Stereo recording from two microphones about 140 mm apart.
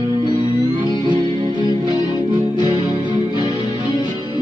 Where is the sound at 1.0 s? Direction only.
35° right (ahead or behind).